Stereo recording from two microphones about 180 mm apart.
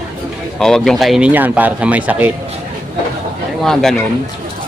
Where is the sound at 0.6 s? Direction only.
Centre (ahead or behind).